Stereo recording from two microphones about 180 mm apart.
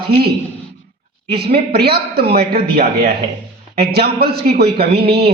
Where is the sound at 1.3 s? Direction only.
65° right (ahead or behind).